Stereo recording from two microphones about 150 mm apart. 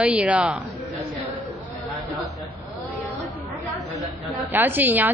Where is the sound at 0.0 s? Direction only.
10° right (ahead or behind).